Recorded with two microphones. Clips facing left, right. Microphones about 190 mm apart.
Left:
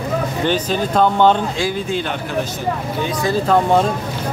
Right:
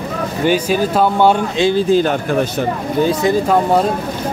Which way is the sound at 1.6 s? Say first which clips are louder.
Right 8 dB; 35° right (ahead or behind).